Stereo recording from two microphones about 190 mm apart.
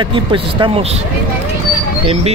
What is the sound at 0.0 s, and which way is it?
Speech, 25° right (ahead or behind).